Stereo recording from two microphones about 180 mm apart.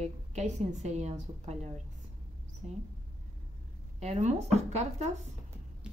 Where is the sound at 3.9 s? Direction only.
40° right (ahead or behind).